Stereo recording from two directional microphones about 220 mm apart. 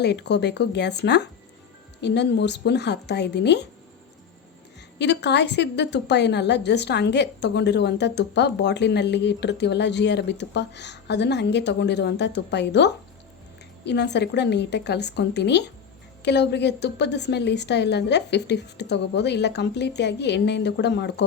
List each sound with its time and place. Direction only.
0.0 s a woman's voice: 50° left (ahead or behind)
4.9 s a woman's voice: 50° left (ahead or behind)